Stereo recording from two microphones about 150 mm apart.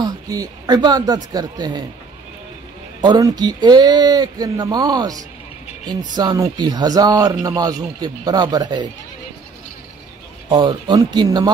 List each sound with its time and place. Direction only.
0.0 s a man's voice: 25° right (ahead or behind)
3.0 s a man's voice: 25° right (ahead or behind)
10.5 s a man's voice: 30° right (ahead or behind)